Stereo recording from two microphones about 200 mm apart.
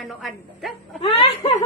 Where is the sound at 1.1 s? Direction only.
25° left (ahead or behind).